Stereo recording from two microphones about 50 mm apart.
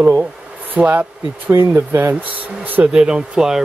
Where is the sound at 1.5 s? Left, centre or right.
Right.